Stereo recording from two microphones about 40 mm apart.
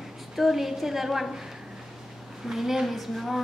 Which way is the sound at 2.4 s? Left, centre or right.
Centre.